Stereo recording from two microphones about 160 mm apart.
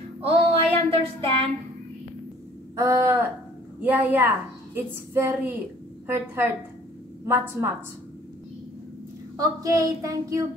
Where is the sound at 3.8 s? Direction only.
10° right (ahead or behind).